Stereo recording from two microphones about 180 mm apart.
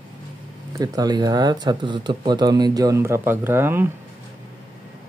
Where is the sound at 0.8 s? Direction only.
20° right (ahead or behind).